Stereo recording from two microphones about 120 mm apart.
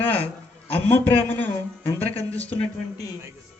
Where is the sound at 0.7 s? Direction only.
15° left (ahead or behind).